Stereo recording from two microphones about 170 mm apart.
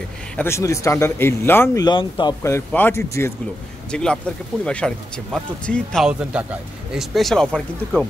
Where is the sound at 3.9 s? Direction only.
5° left (ahead or behind).